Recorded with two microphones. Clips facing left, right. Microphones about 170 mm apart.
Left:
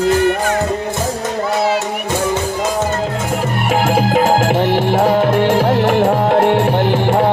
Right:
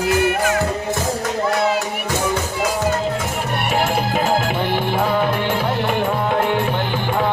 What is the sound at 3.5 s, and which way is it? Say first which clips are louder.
Music: left 4 dB; 90° left.